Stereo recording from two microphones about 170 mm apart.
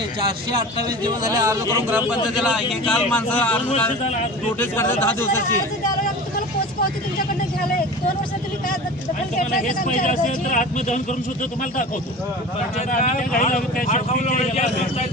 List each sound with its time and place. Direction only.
1.0 s speech: 20° right (ahead or behind)
1.9 s a man's voice: 10° right (ahead or behind); by 5.4 s 15° left (ahead or behind)
9.5 s speech: 50° left (ahead or behind)
12.9 s speech: 50° left (ahead or behind)